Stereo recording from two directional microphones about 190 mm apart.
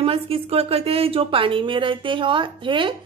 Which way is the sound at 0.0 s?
30° right (ahead or behind).